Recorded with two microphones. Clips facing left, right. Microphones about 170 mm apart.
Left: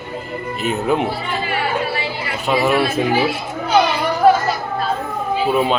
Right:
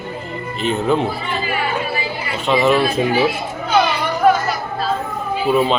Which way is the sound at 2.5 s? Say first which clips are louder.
Right 2 dB; 5° left (ahead or behind).